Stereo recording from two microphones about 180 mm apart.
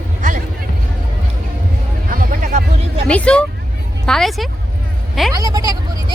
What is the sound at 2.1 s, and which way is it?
Music, 50° right (ahead or behind).